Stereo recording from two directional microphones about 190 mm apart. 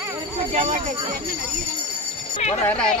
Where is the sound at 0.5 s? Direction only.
40° right (ahead or behind).